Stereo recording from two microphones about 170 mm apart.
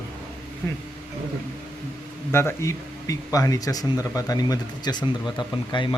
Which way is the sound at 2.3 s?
15° left (ahead or behind).